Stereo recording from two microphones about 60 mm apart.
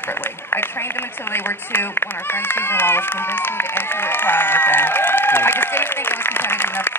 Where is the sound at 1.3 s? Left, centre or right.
Left.